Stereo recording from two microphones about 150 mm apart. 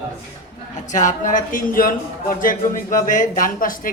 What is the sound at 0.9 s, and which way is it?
Speech, 55° left (ahead or behind).